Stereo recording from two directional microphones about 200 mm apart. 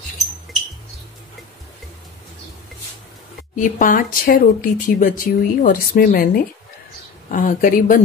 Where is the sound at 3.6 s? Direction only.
40° left (ahead or behind).